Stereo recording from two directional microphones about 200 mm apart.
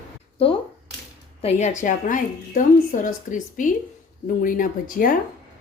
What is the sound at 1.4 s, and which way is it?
A woman's voice, 35° left (ahead or behind).